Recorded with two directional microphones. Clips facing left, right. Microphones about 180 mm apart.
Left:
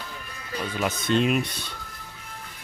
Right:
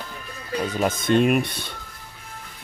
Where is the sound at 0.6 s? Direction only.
40° right (ahead or behind).